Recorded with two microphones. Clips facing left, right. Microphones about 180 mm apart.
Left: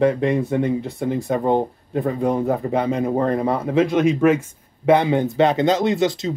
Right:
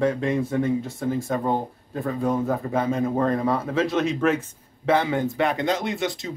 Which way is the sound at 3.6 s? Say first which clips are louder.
Left 6 dB; 15° left (ahead or behind).